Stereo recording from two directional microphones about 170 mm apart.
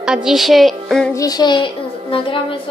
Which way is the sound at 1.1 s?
20° left (ahead or behind).